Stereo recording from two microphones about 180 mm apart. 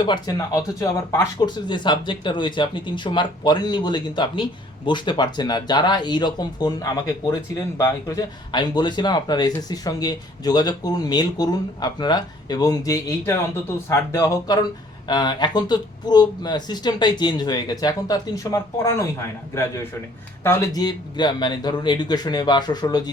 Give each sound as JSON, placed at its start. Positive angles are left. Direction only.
{"t": 0.0, "sound": "speech", "side_deg": 25}